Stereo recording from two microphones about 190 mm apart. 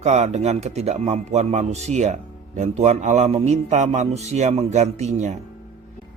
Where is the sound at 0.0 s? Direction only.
35° right (ahead or behind).